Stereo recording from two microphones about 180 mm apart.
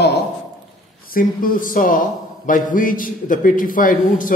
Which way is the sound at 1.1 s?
50° left (ahead or behind).